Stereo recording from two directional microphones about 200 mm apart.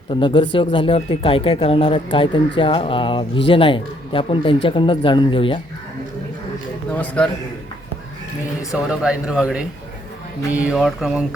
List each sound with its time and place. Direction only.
0.1 s speech: 25° left (ahead or behind)
6.9 s a man's voice: 10° left (ahead or behind)
8.7 s speech: 5° right (ahead or behind)